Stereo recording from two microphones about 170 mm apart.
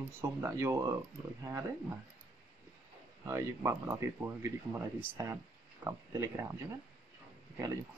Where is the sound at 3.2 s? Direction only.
15° right (ahead or behind).